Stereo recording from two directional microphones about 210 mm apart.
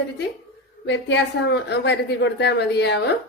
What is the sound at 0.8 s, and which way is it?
A woman's voice, 55° left (ahead or behind).